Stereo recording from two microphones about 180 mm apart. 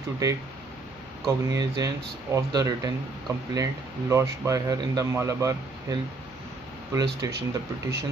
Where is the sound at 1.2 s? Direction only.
20° right (ahead or behind).